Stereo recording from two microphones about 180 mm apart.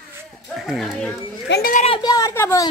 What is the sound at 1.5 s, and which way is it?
Speech, 60° left (ahead or behind).